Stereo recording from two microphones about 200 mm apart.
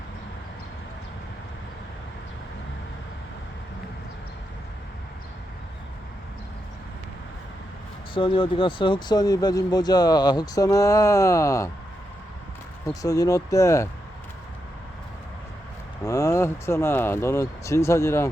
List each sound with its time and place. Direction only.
8.1 s speech: 25° left (ahead or behind)
12.9 s speech: 15° left (ahead or behind)
16.0 s speech: 15° left (ahead or behind)